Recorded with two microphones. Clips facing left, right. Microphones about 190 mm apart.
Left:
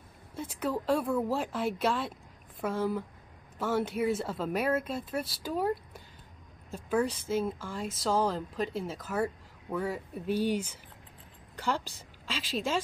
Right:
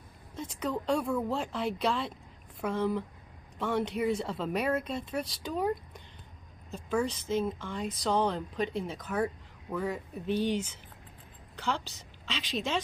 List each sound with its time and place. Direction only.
0.4 s a woman's voice: 5° left (ahead or behind)